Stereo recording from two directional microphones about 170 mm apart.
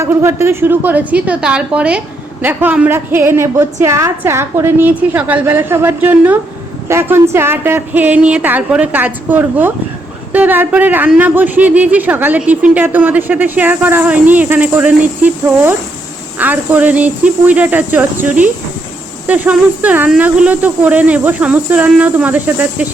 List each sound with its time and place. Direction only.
0.0 s speech: 15° right (ahead or behind)